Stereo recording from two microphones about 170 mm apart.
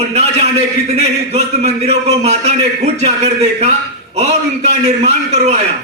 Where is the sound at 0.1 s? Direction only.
40° right (ahead or behind).